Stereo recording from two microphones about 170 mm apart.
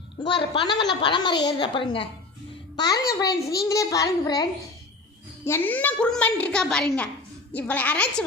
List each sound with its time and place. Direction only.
0.2 s a woman's voice: 30° left (ahead or behind)
5.5 s a woman's voice: 10° left (ahead or behind)